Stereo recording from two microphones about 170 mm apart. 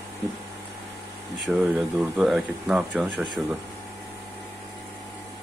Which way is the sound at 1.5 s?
5° right (ahead or behind).